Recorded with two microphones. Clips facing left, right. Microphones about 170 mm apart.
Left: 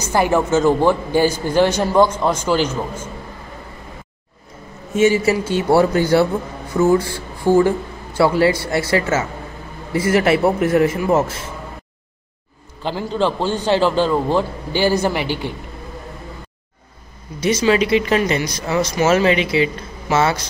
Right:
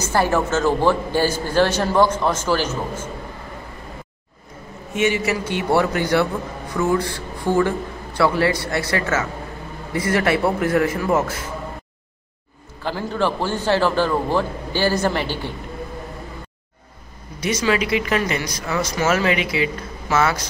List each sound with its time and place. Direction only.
0.0 s a man's voice: 15° left (ahead or behind)
4.9 s speech: 35° left (ahead or behind)
12.8 s a man's voice: 20° left (ahead or behind)
17.4 s speech: 25° left (ahead or behind)